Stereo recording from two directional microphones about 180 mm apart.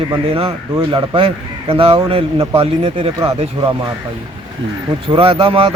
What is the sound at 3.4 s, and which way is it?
Speech, 30° right (ahead or behind).